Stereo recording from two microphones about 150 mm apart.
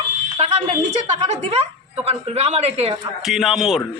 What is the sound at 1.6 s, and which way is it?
Speech, 40° right (ahead or behind).